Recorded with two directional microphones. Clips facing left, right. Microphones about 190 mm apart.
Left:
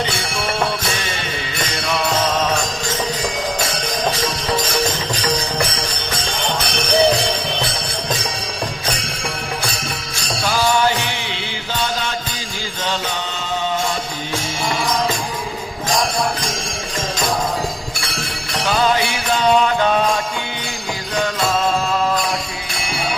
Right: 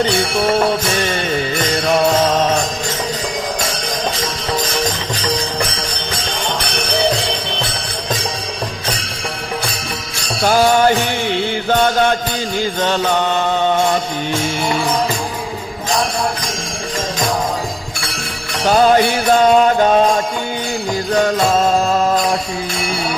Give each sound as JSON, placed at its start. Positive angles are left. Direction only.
{"t": 10.4, "sound": "music", "side_deg": -50}
{"t": 12.8, "sound": "mantra", "side_deg": -55}
{"t": 18.7, "sound": "music", "side_deg": -45}
{"t": 21.2, "sound": "music", "side_deg": -45}